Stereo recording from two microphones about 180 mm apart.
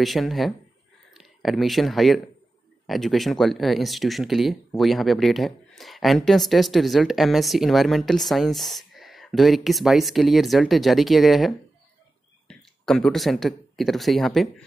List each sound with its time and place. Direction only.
0.0 s speech: centre (ahead or behind)